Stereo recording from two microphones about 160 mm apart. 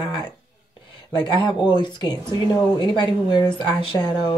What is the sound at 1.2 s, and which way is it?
Speech, 30° left (ahead or behind).